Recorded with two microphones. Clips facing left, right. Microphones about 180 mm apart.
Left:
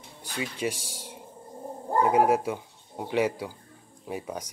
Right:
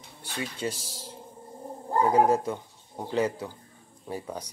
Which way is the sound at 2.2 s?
10° left (ahead or behind).